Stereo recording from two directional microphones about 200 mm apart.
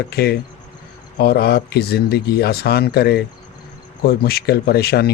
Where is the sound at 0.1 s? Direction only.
55° left (ahead or behind).